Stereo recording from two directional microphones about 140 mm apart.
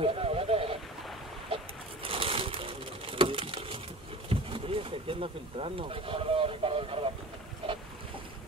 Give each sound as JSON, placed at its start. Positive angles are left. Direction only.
{"t": 0.0, "sound": "sheep", "side_deg": -40}
{"t": 2.0, "sound": "pigeon", "side_deg": -40}
{"t": 4.3, "sound": "wild animals", "side_deg": -40}